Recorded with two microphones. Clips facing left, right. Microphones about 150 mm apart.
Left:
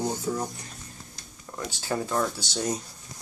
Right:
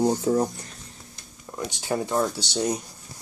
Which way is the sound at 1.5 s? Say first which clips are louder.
Right 3 dB; 20° right (ahead or behind).